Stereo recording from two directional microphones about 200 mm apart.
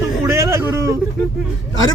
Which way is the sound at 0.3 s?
15° right (ahead or behind).